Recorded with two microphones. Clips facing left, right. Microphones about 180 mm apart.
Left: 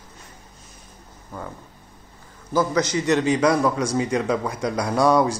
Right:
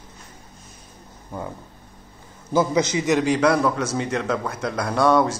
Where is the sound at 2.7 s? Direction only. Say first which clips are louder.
Right 1 dB; 5° right (ahead or behind).